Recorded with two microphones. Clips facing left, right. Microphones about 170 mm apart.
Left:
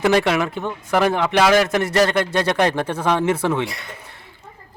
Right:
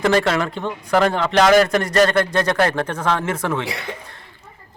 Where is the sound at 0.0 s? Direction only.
10° left (ahead or behind).